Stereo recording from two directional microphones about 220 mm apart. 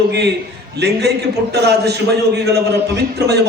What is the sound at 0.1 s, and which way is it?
A man's voice, 50° right (ahead or behind).